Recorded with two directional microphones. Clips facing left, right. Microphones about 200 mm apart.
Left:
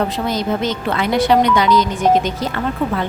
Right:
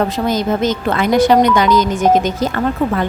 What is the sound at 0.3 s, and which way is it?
Speech, 45° right (ahead or behind).